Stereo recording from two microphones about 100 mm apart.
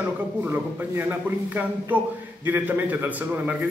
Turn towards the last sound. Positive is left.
turn(degrees=-15)  # may be behind; listen again after turning